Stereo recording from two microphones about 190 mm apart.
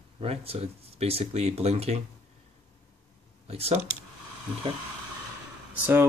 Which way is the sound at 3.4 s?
30° right (ahead or behind).